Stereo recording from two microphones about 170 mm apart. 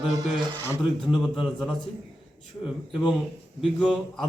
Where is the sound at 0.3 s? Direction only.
25° right (ahead or behind).